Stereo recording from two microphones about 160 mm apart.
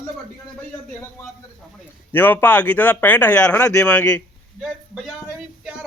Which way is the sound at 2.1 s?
10° left (ahead or behind).